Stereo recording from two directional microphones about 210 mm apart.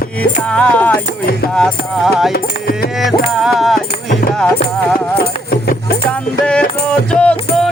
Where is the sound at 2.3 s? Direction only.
45° left (ahead or behind).